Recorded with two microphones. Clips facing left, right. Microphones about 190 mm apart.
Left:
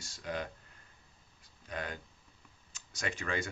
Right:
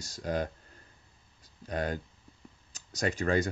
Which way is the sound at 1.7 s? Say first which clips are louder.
Right 8 dB; 40° right (ahead or behind).